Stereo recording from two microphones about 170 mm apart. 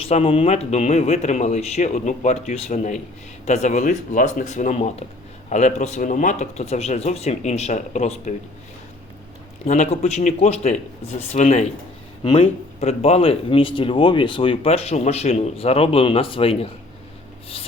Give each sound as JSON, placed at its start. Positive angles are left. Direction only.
{"t": 0.0, "sound": "speech", "side_deg": 35}
{"t": 9.6, "sound": "speech", "side_deg": 45}
{"t": 12.2, "sound": "speech", "side_deg": 35}